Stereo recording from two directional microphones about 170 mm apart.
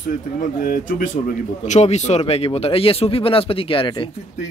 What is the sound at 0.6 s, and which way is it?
Speech, 55° left (ahead or behind).